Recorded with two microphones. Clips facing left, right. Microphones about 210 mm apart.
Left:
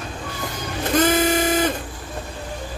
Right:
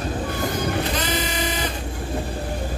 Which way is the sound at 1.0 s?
50° left (ahead or behind).